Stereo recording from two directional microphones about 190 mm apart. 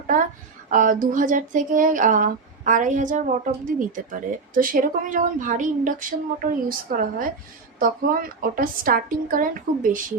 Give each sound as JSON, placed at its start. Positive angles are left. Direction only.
{"t": 0.1, "sound": "speech", "side_deg": -45}